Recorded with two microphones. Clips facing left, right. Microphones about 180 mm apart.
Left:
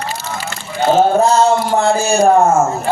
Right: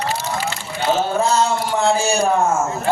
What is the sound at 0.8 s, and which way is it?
A man's voice, 45° left (ahead or behind).